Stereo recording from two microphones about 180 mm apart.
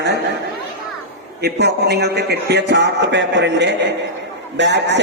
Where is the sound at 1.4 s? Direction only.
65° right (ahead or behind).